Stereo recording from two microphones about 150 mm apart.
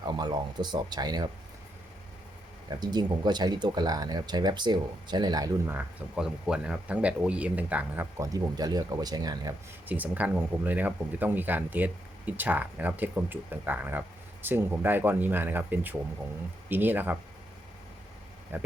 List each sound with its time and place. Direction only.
0.0 s speech: 30° right (ahead or behind)
2.6 s speech: 30° right (ahead or behind)
5.6 s speech: 10° right (ahead or behind)
8.2 s speech: 25° right (ahead or behind)
9.8 s speech: 10° right (ahead or behind)
18.5 s speech: 10° right (ahead or behind)